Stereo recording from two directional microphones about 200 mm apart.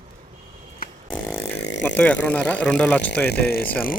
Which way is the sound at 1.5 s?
60° left (ahead or behind).